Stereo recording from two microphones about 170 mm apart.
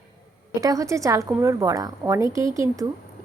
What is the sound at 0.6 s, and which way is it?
A woman's voice, 20° right (ahead or behind).